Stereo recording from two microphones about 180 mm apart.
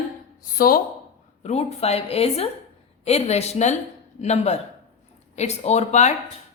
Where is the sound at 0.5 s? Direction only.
55° left (ahead or behind).